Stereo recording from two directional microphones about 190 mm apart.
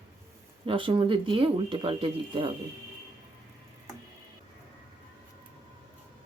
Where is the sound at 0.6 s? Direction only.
25° right (ahead or behind).